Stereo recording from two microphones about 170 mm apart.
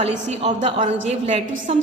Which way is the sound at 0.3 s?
40° right (ahead or behind).